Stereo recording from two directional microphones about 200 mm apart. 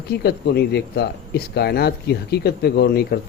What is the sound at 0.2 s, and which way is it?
Speech, 55° left (ahead or behind).